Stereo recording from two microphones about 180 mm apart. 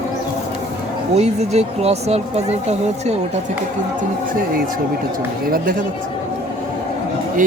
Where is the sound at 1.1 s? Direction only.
35° right (ahead or behind).